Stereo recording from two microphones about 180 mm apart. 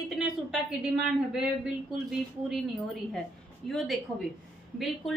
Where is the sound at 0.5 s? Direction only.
Centre (ahead or behind).